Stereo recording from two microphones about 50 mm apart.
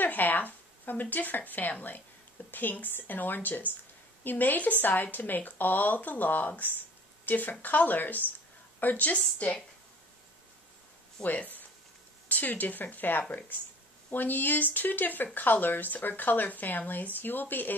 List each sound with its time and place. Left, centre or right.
0.0 s a woman's voice: left
9.2 s speech: left
11.2 s speech: left